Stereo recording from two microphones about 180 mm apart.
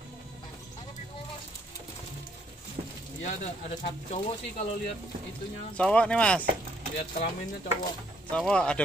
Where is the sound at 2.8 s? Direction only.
35° right (ahead or behind).